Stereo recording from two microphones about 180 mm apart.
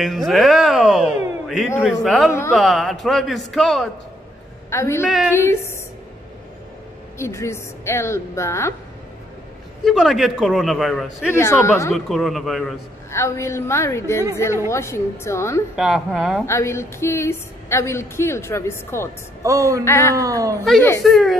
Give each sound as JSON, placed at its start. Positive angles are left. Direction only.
{"t": 0.0, "sound": "speech", "side_deg": 0}
{"t": 4.6, "sound": "a woman's voice", "side_deg": 15}
{"t": 7.2, "sound": "a woman's voice", "side_deg": 15}
{"t": 9.8, "sound": "speech", "side_deg": 0}
{"t": 11.3, "sound": "a woman's voice", "side_deg": 15}
{"t": 11.9, "sound": "speech", "side_deg": 0}
{"t": 13.1, "sound": "a woman's voice", "side_deg": 15}
{"t": 15.7, "sound": "speech", "side_deg": 0}
{"t": 16.4, "sound": "a woman's voice", "side_deg": 15}
{"t": 19.4, "sound": "a sound", "side_deg": -15}
{"t": 19.8, "sound": "a woman's voice", "side_deg": 15}
{"t": 20.2, "sound": "speech", "side_deg": -20}
{"t": 21.0, "sound": "speech", "side_deg": 0}